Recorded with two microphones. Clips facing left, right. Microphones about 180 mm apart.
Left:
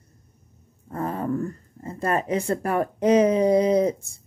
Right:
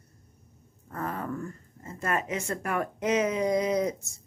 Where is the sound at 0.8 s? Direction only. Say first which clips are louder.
Left 6 dB; 30° left (ahead or behind).